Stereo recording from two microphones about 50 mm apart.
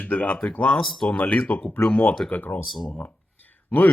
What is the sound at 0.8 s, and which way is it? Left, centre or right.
Speech, centre.